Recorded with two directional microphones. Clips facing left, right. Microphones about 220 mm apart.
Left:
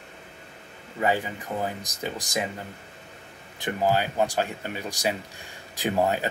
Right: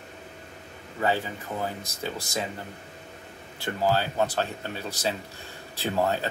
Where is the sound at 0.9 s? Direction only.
15° left (ahead or behind).